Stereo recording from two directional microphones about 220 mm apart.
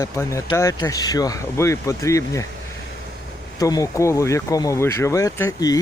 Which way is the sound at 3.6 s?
15° left (ahead or behind).